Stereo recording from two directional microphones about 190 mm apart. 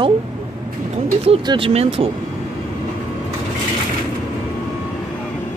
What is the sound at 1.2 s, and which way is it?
Speech, 30° right (ahead or behind).